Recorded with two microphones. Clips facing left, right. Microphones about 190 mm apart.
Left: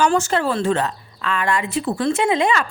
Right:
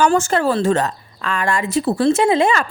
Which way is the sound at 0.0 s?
50° right (ahead or behind).